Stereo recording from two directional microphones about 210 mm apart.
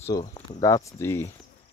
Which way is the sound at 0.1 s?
20° left (ahead or behind).